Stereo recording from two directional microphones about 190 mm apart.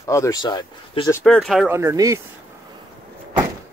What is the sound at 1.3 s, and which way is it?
Speech, 5° left (ahead or behind).